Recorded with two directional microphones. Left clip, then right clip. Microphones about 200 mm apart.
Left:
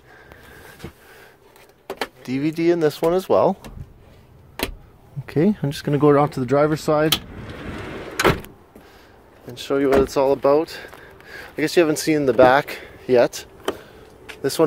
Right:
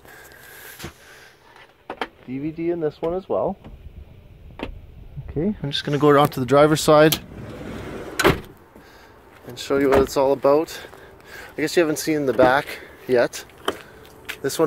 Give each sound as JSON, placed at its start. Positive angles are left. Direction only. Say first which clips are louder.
{"t": 2.2, "sound": "speech", "louder": "left 8 dB", "side_deg": 45}
{"t": 5.2, "sound": "speech", "louder": "left 6 dB", "side_deg": 35}
{"t": 5.9, "sound": "speech", "louder": "even", "side_deg": 10}
{"t": 6.4, "sound": "speech", "louder": "right 3 dB", "side_deg": -10}
{"t": 9.5, "sound": "speech", "louder": "even", "side_deg": 0}